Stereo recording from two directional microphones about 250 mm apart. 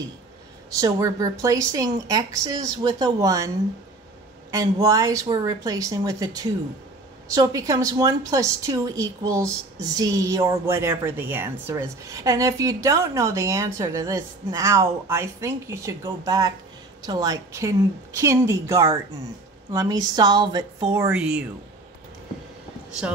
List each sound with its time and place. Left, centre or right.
0.7 s a woman's voice: centre